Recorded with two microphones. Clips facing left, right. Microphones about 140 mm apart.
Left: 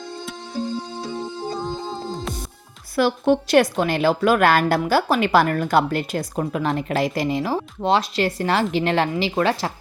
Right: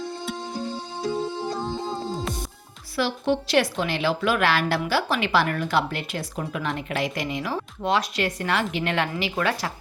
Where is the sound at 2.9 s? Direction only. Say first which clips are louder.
Left 6 dB; 50° left (ahead or behind).